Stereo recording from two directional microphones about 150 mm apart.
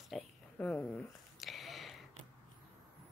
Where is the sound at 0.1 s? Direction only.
10° left (ahead or behind).